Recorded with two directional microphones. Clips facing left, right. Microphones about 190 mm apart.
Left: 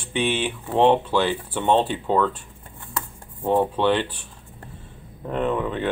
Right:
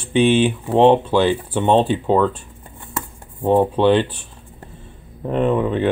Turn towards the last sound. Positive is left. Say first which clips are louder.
# right 6 dB
turn(degrees=-20)  # may be behind; listen again after turning